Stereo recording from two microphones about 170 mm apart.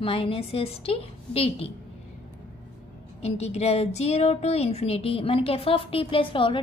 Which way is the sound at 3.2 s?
40° left (ahead or behind).